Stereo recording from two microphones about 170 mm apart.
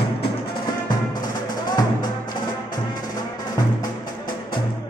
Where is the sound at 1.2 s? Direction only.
25° left (ahead or behind).